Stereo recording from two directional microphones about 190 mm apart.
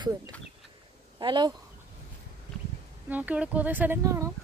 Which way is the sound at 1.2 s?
25° right (ahead or behind).